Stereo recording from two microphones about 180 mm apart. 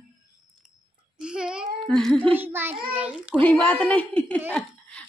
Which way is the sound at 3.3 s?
10° left (ahead or behind).